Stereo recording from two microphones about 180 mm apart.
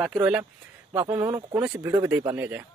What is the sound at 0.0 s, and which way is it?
Speech, 5° right (ahead or behind).